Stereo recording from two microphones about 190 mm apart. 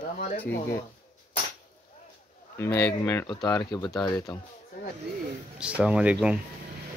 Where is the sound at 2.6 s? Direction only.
15° left (ahead or behind).